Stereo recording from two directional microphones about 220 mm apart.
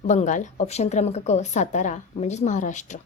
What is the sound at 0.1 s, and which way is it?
A woman's voice, 35° left (ahead or behind).